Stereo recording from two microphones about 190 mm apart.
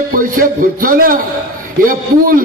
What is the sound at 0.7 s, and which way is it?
Speech, 50° right (ahead or behind).